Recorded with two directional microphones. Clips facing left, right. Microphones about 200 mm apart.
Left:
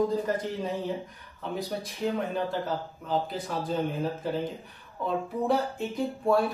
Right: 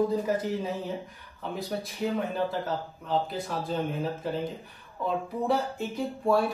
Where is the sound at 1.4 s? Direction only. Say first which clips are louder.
Even; centre (ahead or behind).